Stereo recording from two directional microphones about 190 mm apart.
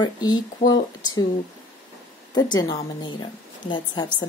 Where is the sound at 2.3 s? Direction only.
20° left (ahead or behind).